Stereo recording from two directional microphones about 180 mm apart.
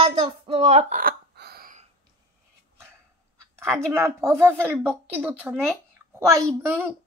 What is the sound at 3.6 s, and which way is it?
A woman's voice, 15° right (ahead or behind).